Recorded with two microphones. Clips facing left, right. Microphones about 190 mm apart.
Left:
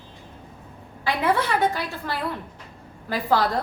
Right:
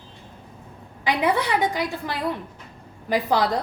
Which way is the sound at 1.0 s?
15° right (ahead or behind).